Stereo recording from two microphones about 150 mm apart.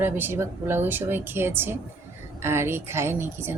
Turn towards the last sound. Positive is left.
turn(degrees=-15)  # may be behind; listen again after turning